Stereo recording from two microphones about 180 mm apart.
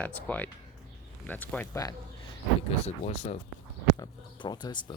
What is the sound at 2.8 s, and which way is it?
Speech, 35° left (ahead or behind).